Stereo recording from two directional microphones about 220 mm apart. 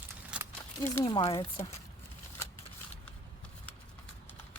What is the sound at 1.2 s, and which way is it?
Speech, 25° left (ahead or behind).